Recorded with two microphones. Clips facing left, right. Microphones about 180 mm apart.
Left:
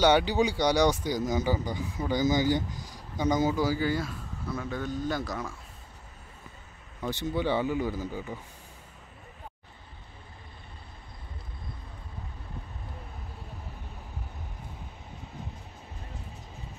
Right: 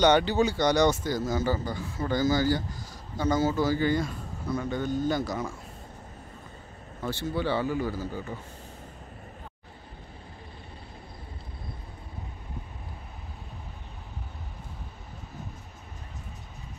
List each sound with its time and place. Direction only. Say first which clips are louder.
0.0 s speech: right 1 dB; 10° left (ahead or behind)
7.0 s speech: even; 15° left (ahead or behind)